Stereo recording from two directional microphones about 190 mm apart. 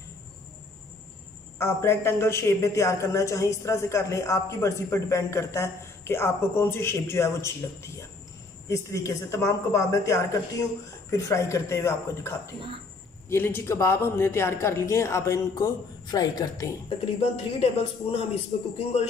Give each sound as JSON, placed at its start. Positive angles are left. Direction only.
{"t": 1.6, "sound": "a man's voice", "side_deg": 15}
{"t": 17.0, "sound": "a man's voice", "side_deg": 30}